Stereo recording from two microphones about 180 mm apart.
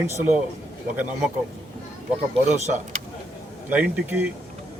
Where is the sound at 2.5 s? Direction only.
40° right (ahead or behind).